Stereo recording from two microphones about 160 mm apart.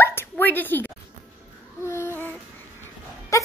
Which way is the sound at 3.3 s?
20° left (ahead or behind).